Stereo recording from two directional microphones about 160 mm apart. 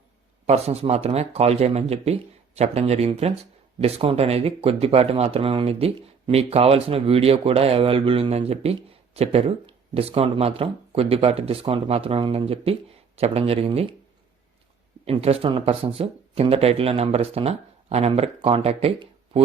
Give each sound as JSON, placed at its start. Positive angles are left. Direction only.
{"t": 0.4, "sound": "speech", "side_deg": -40}
{"t": 15.0, "sound": "speech", "side_deg": -40}